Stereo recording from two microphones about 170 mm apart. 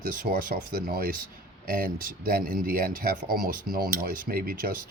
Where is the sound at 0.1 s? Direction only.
55° right (ahead or behind).